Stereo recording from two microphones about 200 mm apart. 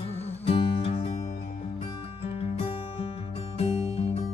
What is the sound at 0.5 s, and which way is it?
Music, 30° left (ahead or behind).